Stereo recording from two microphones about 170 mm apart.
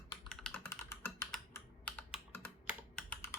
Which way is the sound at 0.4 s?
15° left (ahead or behind).